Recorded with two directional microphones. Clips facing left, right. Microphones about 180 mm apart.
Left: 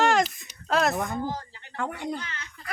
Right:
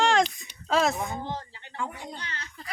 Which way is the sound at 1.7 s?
65° left (ahead or behind).